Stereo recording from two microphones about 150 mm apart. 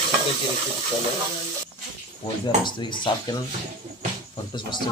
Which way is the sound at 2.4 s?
30° left (ahead or behind).